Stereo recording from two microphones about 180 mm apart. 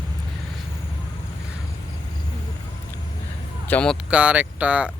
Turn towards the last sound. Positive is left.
turn(degrees=-10)  # may be behind; listen again after turning